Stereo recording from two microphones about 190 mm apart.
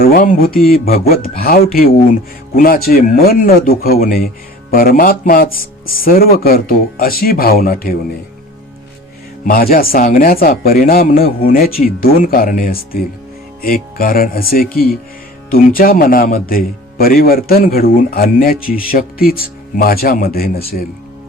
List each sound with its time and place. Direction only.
0.0 s speech: 50° left (ahead or behind)
9.4 s speech: 50° left (ahead or behind)